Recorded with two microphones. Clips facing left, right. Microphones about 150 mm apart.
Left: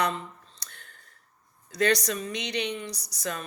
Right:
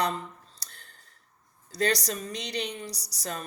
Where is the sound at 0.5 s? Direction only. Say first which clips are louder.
Left 2 dB; 35° right (ahead or behind).